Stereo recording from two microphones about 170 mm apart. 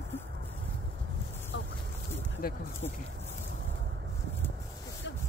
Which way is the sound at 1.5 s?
90° left.